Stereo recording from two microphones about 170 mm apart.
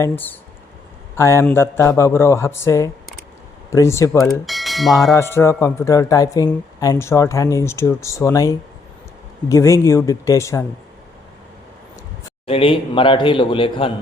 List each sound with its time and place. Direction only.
0.0 s speech: 10° left (ahead or behind)
4.2 s speech: centre (ahead or behind)
5.1 s speech: 15° left (ahead or behind)
12.5 s a man's voice: 35° left (ahead or behind)